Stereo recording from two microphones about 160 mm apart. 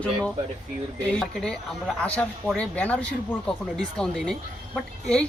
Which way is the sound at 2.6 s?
10° left (ahead or behind).